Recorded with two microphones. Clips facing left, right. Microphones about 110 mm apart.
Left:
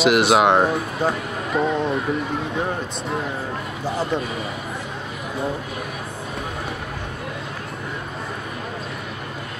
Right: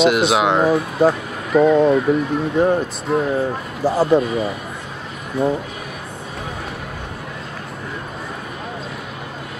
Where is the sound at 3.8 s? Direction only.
35° right (ahead or behind).